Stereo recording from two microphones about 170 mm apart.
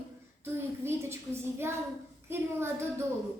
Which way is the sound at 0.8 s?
15° right (ahead or behind).